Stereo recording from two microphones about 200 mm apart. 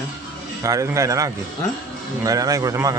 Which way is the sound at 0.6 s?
15° right (ahead or behind).